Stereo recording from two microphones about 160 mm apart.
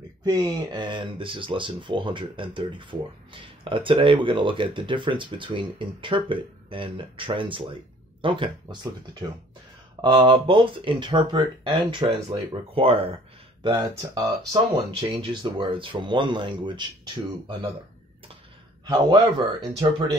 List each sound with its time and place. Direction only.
0.2 s speech: 25° right (ahead or behind)
10.0 s speech: 30° right (ahead or behind)
18.9 s speech: 25° right (ahead or behind)